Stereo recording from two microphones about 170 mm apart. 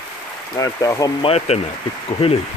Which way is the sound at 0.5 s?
20° left (ahead or behind).